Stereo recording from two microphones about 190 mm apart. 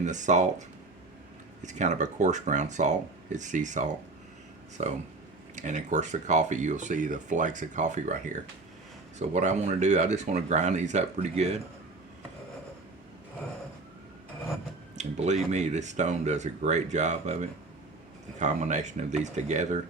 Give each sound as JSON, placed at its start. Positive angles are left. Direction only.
{"t": 0.0, "sound": "speech", "side_deg": -40}
{"t": 1.6, "sound": "speech", "side_deg": -40}
{"t": 14.9, "sound": "speech", "side_deg": -40}